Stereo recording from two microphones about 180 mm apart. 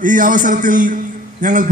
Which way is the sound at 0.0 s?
45° right (ahead or behind).